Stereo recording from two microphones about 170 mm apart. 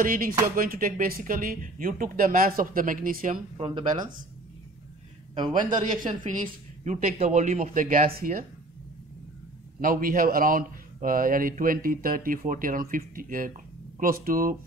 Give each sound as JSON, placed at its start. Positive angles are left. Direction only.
{"t": 0.0, "sound": "speech", "side_deg": -55}
{"t": 3.5, "sound": "speech", "side_deg": -35}
{"t": 5.6, "sound": "a woman's voice", "side_deg": -50}
{"t": 9.8, "sound": "speech", "side_deg": -55}